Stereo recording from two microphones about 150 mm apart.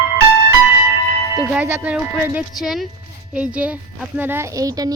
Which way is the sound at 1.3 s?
10° right (ahead or behind).